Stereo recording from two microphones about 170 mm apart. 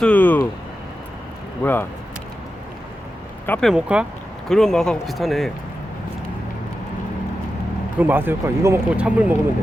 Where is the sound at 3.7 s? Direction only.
5° right (ahead or behind).